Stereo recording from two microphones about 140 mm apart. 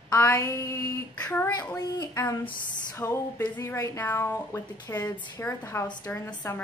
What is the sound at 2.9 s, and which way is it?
A woman's voice, 20° left (ahead or behind).